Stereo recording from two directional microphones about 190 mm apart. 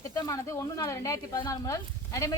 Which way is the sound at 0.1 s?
15° left (ahead or behind).